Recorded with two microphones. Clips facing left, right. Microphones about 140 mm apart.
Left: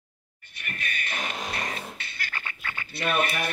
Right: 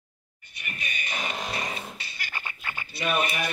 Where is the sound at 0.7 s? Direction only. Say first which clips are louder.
Left 1 dB; 15° right (ahead or behind).